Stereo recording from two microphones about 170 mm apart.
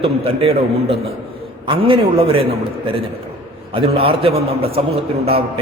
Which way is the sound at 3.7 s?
30° right (ahead or behind).